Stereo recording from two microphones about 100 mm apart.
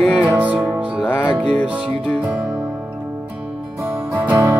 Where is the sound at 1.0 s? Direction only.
15° left (ahead or behind).